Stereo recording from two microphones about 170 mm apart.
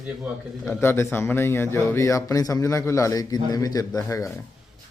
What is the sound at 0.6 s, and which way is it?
A man's voice, 15° left (ahead or behind).